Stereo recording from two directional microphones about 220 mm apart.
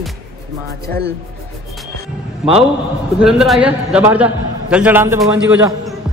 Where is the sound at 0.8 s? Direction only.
45° right (ahead or behind).